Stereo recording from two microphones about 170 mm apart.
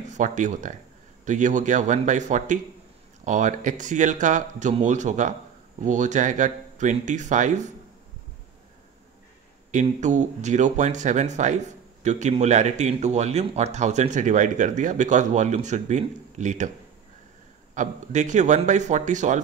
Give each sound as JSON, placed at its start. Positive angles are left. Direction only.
{"t": 0.1, "sound": "speech", "side_deg": -45}
{"t": 9.7, "sound": "speech", "side_deg": -45}
{"t": 17.7, "sound": "speech", "side_deg": -45}